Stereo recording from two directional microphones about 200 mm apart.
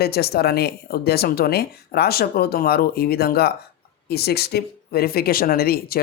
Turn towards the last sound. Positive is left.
turn(degrees=50)  # may be behind; listen again after turning